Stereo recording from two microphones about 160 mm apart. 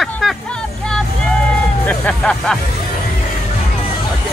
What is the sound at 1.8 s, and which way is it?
Speech, 10° left (ahead or behind).